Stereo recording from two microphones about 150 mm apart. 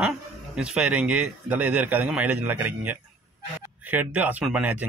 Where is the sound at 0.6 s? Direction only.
5° right (ahead or behind).